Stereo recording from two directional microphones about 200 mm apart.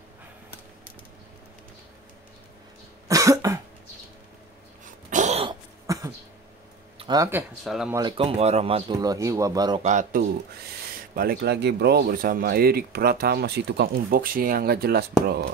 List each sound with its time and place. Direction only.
3.1 s cough: 15° right (ahead or behind)
5.1 s a sound: 35° right (ahead or behind)
5.9 s a sound: 15° right (ahead or behind)
7.0 s speech: 20° right (ahead or behind)
7.6 s speech: centre (ahead or behind)
7.9 s speech: 25° right (ahead or behind)
9.8 s speech: 40° right (ahead or behind)